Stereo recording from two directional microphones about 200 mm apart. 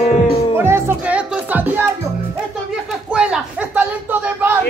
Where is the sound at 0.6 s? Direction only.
10° right (ahead or behind).